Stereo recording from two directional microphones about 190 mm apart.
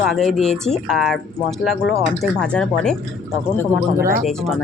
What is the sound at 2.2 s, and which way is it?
Speech, 5° left (ahead or behind).